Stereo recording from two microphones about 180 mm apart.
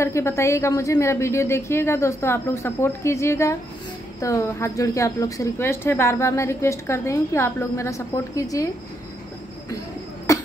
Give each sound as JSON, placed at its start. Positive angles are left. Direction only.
{"t": 0.0, "sound": "a woman's voice", "side_deg": 15}
{"t": 10.3, "sound": "cough", "side_deg": 20}